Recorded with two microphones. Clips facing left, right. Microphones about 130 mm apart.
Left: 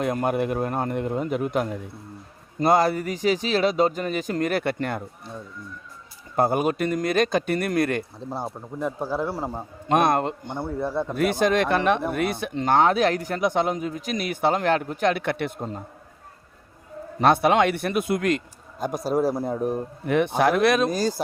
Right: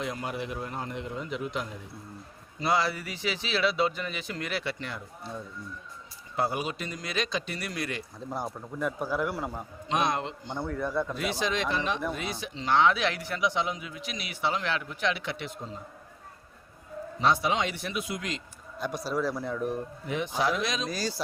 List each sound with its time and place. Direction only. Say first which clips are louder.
0.0 s a man's voice: left 10 dB; 55° left (ahead or behind)
6.3 s a man's voice: left 8 dB; 50° left (ahead or behind)
8.3 s speech: left 1 dB; 30° left (ahead or behind)
9.9 s a man's voice: left 8 dB; 55° left (ahead or behind)
10.6 s speech: left 3 dB; 30° left (ahead or behind)
11.1 s a man's voice: left 9 dB; 50° left (ahead or behind)
17.2 s a man's voice: left 8 dB; 60° left (ahead or behind); by 19.8 s 40° left (ahead or behind)
20.1 s a man's voice: left 8 dB; 60° left (ahead or behind)